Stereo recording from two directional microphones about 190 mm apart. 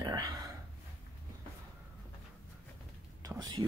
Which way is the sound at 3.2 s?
20° right (ahead or behind).